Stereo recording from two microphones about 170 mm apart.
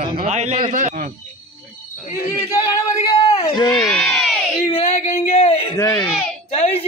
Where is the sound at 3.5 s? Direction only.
25° left (ahead or behind).